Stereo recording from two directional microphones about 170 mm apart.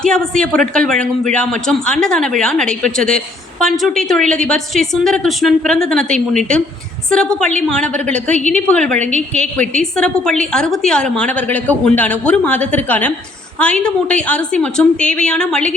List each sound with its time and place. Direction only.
0.0 s a man's voice: 5° left (ahead or behind)